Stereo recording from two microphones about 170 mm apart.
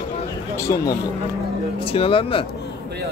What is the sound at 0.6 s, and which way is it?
Speech, 20° left (ahead or behind).